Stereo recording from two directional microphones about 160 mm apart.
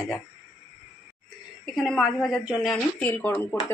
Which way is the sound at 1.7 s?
Centre (ahead or behind).